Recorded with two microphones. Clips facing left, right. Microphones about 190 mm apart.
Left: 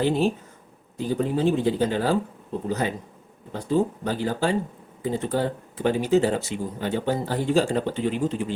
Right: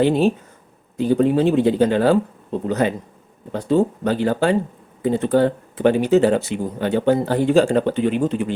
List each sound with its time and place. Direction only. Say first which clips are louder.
0.0 s speech: right 6 dB; 65° right (ahead or behind)